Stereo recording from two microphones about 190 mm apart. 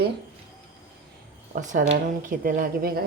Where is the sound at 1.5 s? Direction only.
40° right (ahead or behind).